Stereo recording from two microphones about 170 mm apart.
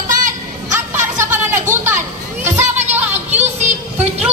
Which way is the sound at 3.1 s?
40° right (ahead or behind).